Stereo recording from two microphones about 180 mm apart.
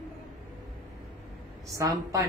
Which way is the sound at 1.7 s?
20° right (ahead or behind).